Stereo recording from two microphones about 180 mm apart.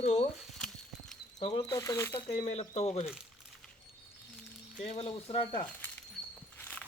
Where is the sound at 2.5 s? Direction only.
35° left (ahead or behind).